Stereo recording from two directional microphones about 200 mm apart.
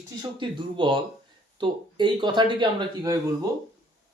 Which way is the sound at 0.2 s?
25° right (ahead or behind).